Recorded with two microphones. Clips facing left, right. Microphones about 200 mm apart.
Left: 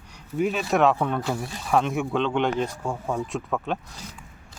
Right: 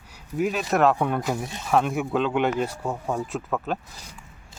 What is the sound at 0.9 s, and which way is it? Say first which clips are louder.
Speech: right 1 dB; 10° right (ahead or behind).